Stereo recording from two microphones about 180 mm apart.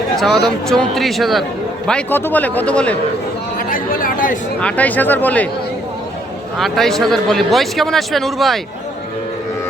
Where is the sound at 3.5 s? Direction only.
50° left (ahead or behind).